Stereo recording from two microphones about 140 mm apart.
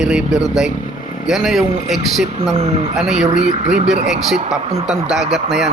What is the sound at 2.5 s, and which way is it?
Speech, 45° right (ahead or behind).